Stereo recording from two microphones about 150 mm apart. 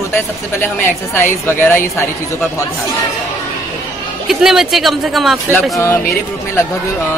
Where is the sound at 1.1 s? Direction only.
15° left (ahead or behind).